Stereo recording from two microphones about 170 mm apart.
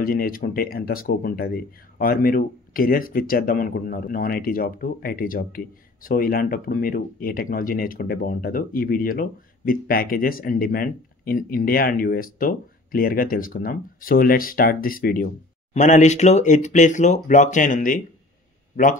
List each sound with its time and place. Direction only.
0.0 s speech: 60° left (ahead or behind)
15.7 s speech: 45° left (ahead or behind)